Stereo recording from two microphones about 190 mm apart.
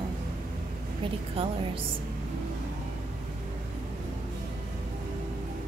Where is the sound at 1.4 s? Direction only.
30° right (ahead or behind).